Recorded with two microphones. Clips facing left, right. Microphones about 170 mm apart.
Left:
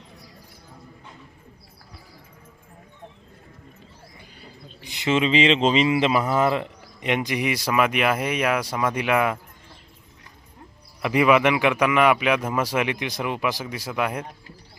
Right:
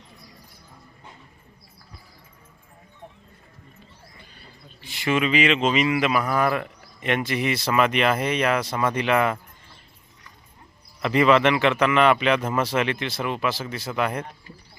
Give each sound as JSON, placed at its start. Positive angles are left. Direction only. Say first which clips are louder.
{"t": 4.8, "sound": "speech", "louder": "left 1 dB", "side_deg": 20}
{"t": 11.0, "sound": "speech", "louder": "even", "side_deg": 10}